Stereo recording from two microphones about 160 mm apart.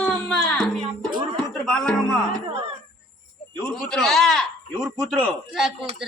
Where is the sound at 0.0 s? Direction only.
5° left (ahead or behind).